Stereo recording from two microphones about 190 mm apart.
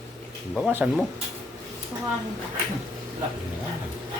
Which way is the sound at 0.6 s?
5° right (ahead or behind).